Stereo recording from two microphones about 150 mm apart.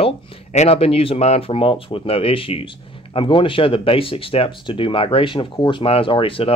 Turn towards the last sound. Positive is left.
turn(degrees=35)  # may be behind; listen again after turning